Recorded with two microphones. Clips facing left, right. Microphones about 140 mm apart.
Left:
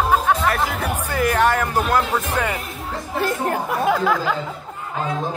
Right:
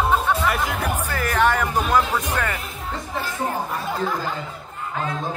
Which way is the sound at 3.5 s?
80° left.